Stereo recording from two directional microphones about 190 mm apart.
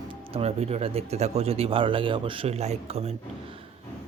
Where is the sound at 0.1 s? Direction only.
30° right (ahead or behind).